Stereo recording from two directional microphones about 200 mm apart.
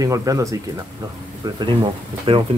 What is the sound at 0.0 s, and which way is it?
Speech, 15° right (ahead or behind).